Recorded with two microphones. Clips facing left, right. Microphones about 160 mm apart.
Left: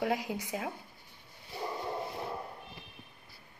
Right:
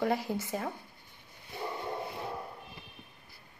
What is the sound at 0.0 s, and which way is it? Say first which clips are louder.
Speech: right 2 dB; 15° left (ahead or behind).